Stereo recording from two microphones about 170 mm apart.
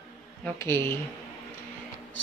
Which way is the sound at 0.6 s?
15° left (ahead or behind).